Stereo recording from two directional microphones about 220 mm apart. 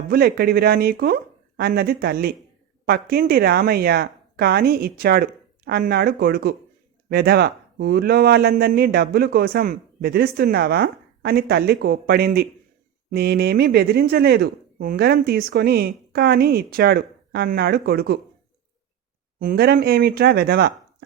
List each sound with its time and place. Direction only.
0.1 s speech: 45° right (ahead or behind)
19.4 s speech: 45° right (ahead or behind)